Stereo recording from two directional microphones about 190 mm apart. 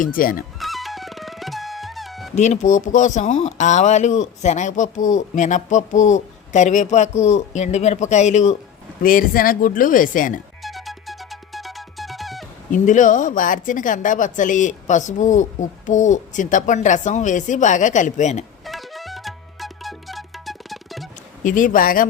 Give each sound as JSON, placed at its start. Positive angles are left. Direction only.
{"t": 0.0, "sound": "speech", "side_deg": 45}
{"t": 0.6, "sound": "music", "side_deg": 0}
{"t": 2.3, "sound": "a woman's voice", "side_deg": 35}
{"t": 9.0, "sound": "speech", "side_deg": 45}
{"t": 10.6, "sound": "music", "side_deg": 0}
{"t": 12.7, "sound": "a woman's voice", "side_deg": 40}
{"t": 18.6, "sound": "music", "side_deg": 0}
{"t": 21.4, "sound": "speech", "side_deg": 45}